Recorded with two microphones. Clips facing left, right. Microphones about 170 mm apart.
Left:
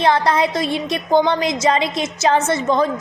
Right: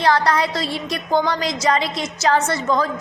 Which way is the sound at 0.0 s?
20° left (ahead or behind).